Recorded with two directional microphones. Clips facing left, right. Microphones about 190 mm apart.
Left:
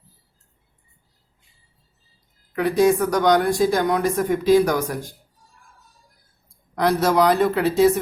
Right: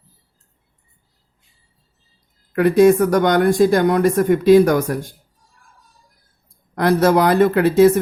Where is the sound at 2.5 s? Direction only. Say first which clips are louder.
Right 6 dB; 55° right (ahead or behind).